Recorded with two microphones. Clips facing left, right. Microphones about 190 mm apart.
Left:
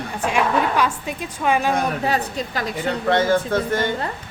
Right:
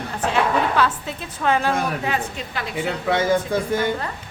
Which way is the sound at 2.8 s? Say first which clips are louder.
Left 2 dB; 10° right (ahead or behind).